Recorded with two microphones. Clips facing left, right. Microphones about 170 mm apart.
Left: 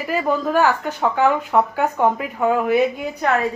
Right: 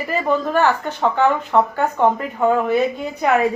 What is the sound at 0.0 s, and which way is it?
Speech, 5° left (ahead or behind).